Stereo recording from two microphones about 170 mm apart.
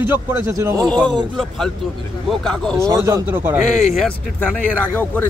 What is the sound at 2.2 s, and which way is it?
Speech, 5° left (ahead or behind).